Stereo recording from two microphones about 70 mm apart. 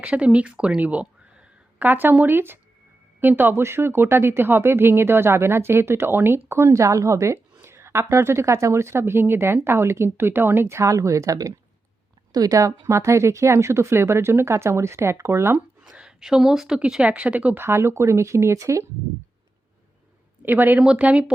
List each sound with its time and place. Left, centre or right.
0.0 s a woman's voice: centre; by 7.3 s right
7.6 s speech: right
15.9 s speech: centre
17.1 s speech: centre
17.6 s speech: right
20.4 s speech: right
20.8 s speech: centre